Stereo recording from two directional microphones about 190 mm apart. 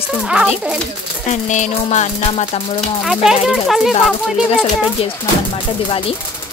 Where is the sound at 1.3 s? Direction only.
40° left (ahead or behind).